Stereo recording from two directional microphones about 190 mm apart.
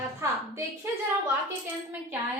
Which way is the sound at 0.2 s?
15° right (ahead or behind).